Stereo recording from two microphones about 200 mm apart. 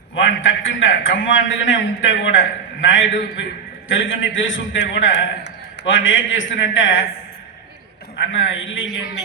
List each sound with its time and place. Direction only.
0.2 s a man's voice: 70° left (ahead or behind)
8.2 s a man's voice: 65° left (ahead or behind)